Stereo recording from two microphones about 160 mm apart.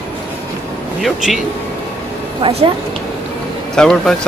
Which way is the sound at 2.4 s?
40° right (ahead or behind).